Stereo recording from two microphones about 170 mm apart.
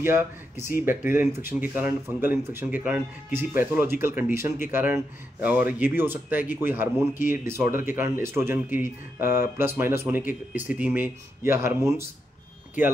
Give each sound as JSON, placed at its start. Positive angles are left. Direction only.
{"t": 0.0, "sound": "speech", "side_deg": -15}